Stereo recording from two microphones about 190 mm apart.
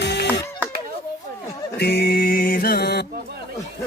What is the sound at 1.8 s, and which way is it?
Music, 55° left (ahead or behind).